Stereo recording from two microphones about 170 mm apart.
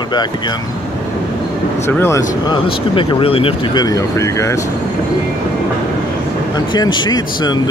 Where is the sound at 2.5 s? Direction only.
30° left (ahead or behind).